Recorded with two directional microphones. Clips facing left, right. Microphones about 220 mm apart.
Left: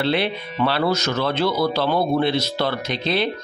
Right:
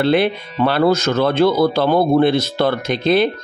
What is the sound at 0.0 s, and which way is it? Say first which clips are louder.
Speech: right 6 dB; 50° right (ahead or behind).